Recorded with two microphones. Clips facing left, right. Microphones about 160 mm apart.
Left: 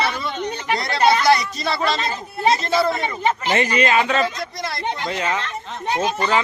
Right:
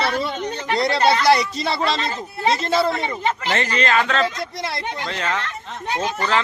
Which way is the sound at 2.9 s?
20° left (ahead or behind).